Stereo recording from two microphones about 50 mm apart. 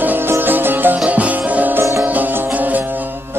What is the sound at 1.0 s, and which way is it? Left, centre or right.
Music, right.